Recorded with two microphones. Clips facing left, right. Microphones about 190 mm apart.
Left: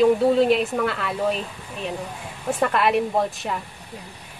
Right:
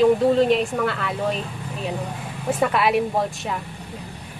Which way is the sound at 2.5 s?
Centre (ahead or behind).